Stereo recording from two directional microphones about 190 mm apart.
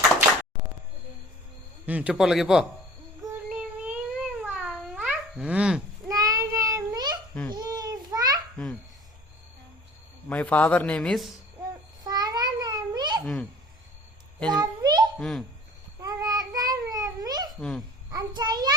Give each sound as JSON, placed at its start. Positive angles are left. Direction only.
{"t": 1.9, "sound": "a man's voice", "side_deg": -5}
{"t": 3.5, "sound": "babbling", "side_deg": -5}
{"t": 6.1, "sound": "child singing", "side_deg": -20}
{"t": 7.5, "sound": "babbling", "side_deg": -20}
{"t": 10.2, "sound": "a man's voice", "side_deg": 10}
{"t": 12.0, "sound": "babbling", "side_deg": -20}
{"t": 14.5, "sound": "a sound", "side_deg": -20}
{"t": 15.2, "sound": "a man's voice", "side_deg": 0}
{"t": 16.0, "sound": "babbling", "side_deg": -20}
{"t": 17.6, "sound": "a man's voice", "side_deg": 0}
{"t": 18.1, "sound": "a sound", "side_deg": -20}